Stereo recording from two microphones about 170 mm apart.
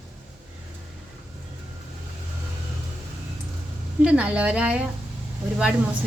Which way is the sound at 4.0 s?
5° right (ahead or behind).